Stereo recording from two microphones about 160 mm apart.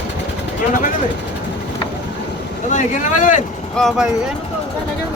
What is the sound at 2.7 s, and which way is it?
Speech, 50° left (ahead or behind).